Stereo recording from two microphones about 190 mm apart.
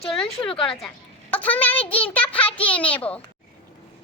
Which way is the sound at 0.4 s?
30° left (ahead or behind).